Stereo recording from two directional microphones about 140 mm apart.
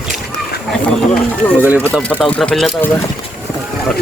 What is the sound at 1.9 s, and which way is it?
Speech, 5° left (ahead or behind).